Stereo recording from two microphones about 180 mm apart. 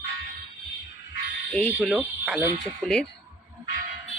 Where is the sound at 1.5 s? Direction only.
5° left (ahead or behind).